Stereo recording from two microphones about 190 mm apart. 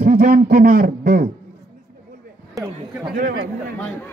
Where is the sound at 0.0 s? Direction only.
50° right (ahead or behind).